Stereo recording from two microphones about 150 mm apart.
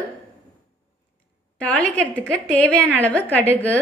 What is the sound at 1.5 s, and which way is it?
A woman's voice, 10° left (ahead or behind).